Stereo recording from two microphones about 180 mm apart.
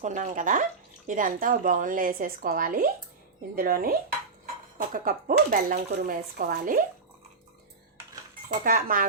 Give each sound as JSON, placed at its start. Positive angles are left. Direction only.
{"t": 0.0, "sound": "speech", "side_deg": -45}
{"t": 8.4, "sound": "speech", "side_deg": -50}